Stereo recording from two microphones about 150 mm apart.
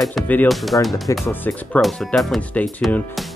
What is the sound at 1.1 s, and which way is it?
Speech, 15° left (ahead or behind).